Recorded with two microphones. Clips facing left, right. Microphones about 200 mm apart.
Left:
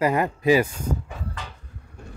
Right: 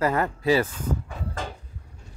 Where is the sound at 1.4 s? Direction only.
50° right (ahead or behind).